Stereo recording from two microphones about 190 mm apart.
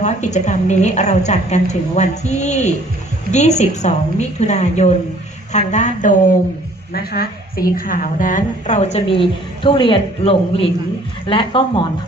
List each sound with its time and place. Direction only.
0.0 s a woman's voice: 40° left (ahead or behind)
6.9 s a woman's voice: 55° left (ahead or behind); by 11.9 s 25° left (ahead or behind)